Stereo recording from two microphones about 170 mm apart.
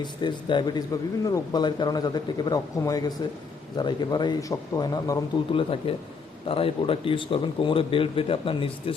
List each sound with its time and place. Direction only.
0.0 s speech: 25° left (ahead or behind)
5.5 s speech: 30° left (ahead or behind)